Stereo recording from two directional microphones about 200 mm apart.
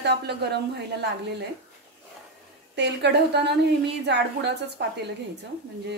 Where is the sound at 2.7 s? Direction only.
60° right (ahead or behind).